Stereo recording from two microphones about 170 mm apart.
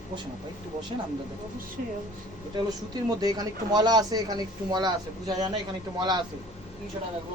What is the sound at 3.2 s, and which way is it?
Speech, 25° right (ahead or behind).